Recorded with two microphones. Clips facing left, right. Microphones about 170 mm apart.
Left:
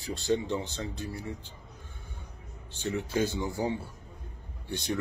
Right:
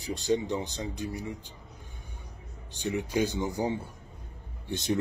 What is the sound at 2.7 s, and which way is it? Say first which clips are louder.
A man's voice: right 1 dB; 15° right (ahead or behind).